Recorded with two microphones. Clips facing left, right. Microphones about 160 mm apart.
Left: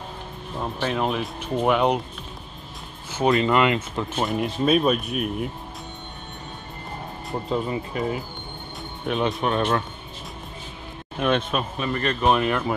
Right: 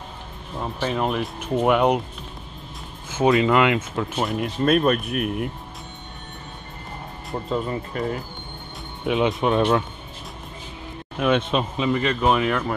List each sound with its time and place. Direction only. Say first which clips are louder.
0.6 s speech: right 1 dB; centre (ahead or behind)
3.4 s speech: right 1 dB; 10° right (ahead or behind)
7.2 s speech: even; 10° left (ahead or behind)
9.0 s speech: right 3 dB; 15° right (ahead or behind)
11.1 s speech: right 2 dB; 5° right (ahead or behind)
11.5 s a man's voice: right 3 dB; 20° right (ahead or behind)
11.9 s speech: even; 10° right (ahead or behind)